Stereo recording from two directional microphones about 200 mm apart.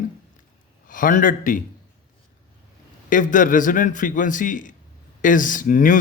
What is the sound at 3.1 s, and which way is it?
A man's voice, 40° left (ahead or behind).